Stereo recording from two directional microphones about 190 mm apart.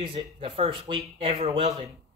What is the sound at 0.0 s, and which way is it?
Speech, 30° right (ahead or behind).